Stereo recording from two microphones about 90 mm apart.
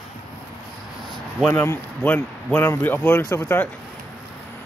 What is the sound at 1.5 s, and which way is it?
Speech, 30° left (ahead or behind).